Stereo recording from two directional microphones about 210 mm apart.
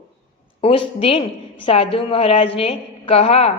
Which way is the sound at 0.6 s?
25° left (ahead or behind).